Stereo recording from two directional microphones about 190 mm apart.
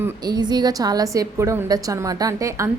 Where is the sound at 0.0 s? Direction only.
20° right (ahead or behind).